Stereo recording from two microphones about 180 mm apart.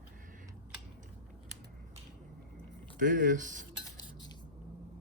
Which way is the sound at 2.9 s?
50° right (ahead or behind).